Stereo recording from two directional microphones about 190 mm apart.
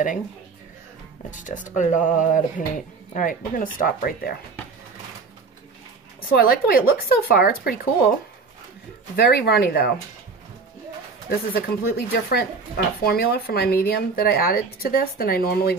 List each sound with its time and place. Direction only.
1.3 s speech: 45° left (ahead or behind)
6.2 s speech: 50° left (ahead or behind)
9.1 s speech: 55° left (ahead or behind)
11.2 s speech: 50° left (ahead or behind)